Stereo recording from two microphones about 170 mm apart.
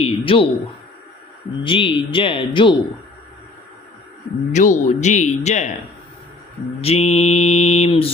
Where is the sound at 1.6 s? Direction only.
30° left (ahead or behind).